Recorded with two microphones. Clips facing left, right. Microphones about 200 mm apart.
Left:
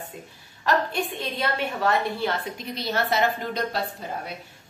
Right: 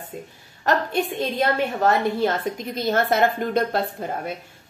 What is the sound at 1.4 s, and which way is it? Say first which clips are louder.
A woman's voice: right 5 dB; 45° right (ahead or behind).